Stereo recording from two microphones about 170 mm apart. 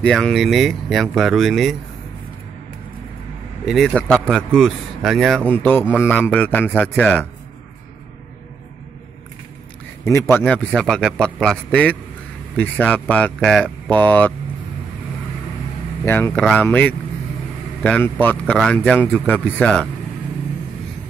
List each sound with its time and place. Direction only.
0.0 s speech: 5° left (ahead or behind)
3.6 s speech: 5° left (ahead or behind)
5.5 s a man's voice: 10° left (ahead or behind)
10.0 s a man's voice: 15° left (ahead or behind)
16.1 s a man's voice: 10° left (ahead or behind)